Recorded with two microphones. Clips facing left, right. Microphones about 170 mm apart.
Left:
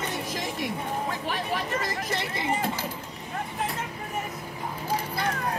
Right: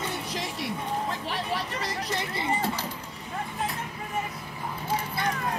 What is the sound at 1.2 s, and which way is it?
Vehicle, 45° left (ahead or behind).